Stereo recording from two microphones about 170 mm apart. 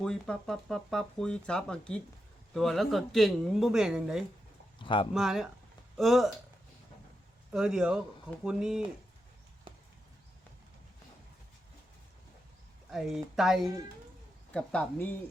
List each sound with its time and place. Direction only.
0.0 s speech: 5° left (ahead or behind)
4.8 s speech: 30° left (ahead or behind)
5.1 s speech: centre (ahead or behind)
7.5 s speech: 5° right (ahead or behind)
12.9 s a woman's voice: centre (ahead or behind)